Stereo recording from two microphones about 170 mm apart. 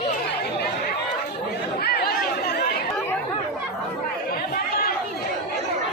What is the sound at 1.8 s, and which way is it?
Chatter, 70° left (ahead or behind).